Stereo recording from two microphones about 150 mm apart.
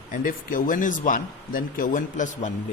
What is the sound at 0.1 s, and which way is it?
A man's voice, 65° left (ahead or behind).